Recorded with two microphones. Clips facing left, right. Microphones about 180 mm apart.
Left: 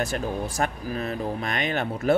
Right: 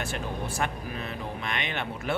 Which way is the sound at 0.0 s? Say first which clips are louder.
Left 6 dB; 40° left (ahead or behind).